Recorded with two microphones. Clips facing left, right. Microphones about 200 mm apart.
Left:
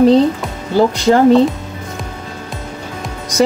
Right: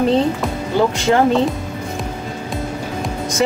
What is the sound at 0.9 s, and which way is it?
Speech, 35° left (ahead or behind).